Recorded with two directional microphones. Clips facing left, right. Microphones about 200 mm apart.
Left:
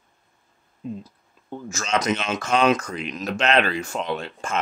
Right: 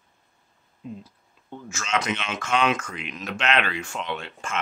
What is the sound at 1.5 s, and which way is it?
Speech, 40° left (ahead or behind).